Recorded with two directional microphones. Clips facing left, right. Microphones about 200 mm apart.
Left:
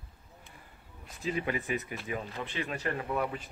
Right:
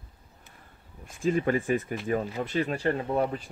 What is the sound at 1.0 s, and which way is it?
Speech, 50° right (ahead or behind).